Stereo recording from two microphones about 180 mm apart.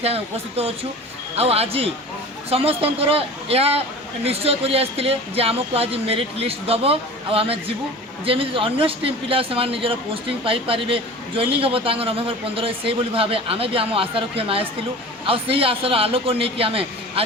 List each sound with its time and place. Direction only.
0.0 s speech: 35° right (ahead or behind)